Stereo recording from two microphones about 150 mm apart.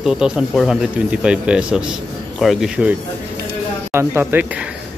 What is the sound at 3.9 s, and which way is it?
Speech, 15° right (ahead or behind).